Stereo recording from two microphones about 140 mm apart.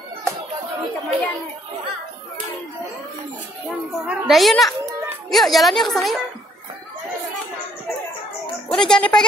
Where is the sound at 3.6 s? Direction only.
10° right (ahead or behind).